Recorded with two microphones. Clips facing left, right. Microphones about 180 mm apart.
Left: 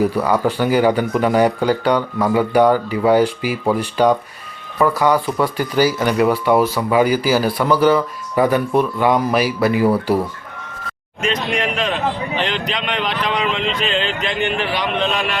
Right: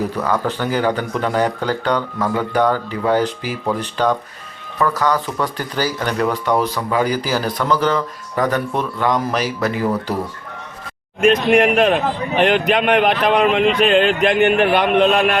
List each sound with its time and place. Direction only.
0.2 s speech: 10° left (ahead or behind)
11.2 s speech: 55° right (ahead or behind)